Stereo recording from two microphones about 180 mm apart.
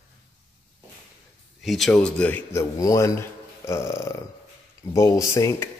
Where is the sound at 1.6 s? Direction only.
Centre (ahead or behind).